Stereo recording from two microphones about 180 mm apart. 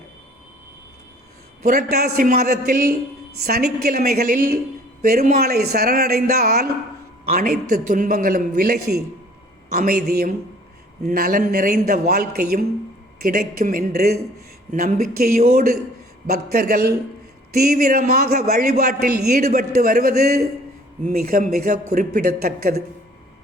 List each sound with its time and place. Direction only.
1.6 s a man's voice: 60° right (ahead or behind)
14.7 s a man's voice: 50° right (ahead or behind)
18.4 s a man's voice: 60° right (ahead or behind)
21.8 s a man's voice: 45° right (ahead or behind)